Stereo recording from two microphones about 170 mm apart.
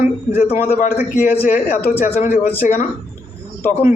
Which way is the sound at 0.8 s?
50° left (ahead or behind).